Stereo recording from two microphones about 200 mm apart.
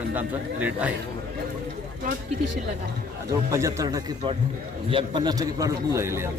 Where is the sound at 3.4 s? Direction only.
15° right (ahead or behind).